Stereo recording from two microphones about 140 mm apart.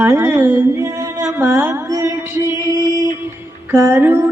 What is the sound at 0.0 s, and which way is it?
Music, 15° right (ahead or behind).